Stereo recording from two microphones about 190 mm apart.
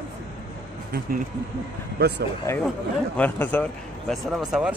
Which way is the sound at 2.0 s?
60° right (ahead or behind).